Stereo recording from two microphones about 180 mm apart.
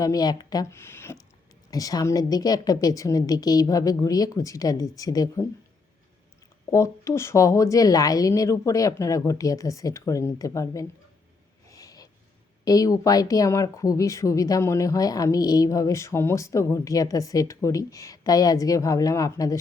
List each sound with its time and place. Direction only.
0.0 s speech: 20° left (ahead or behind)
6.7 s a woman's voice: 15° left (ahead or behind)
11.7 s snort: 20° left (ahead or behind)
12.6 s speech: 20° left (ahead or behind)